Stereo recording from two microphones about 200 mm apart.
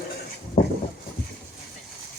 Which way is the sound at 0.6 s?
45° left (ahead or behind).